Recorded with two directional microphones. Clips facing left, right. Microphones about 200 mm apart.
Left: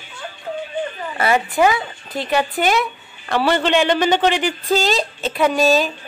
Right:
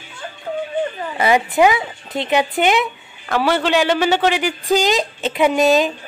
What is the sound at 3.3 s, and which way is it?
A man's voice, 10° right (ahead or behind).